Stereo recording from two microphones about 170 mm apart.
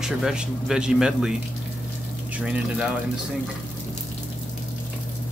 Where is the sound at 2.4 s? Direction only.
5° right (ahead or behind).